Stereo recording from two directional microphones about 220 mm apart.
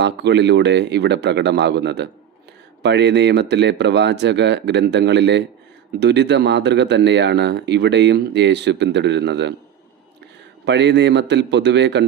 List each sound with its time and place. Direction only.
0.0 s a man's voice: 50° right (ahead or behind)
10.7 s a man's voice: 50° right (ahead or behind)